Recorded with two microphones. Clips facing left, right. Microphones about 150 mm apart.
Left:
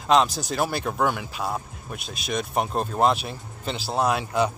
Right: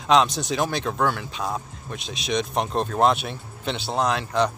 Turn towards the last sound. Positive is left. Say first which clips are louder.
# even
turn(degrees=10)  # may be behind; listen again after turning